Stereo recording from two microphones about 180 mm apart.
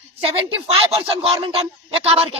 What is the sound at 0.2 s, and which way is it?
Speech, 35° right (ahead or behind).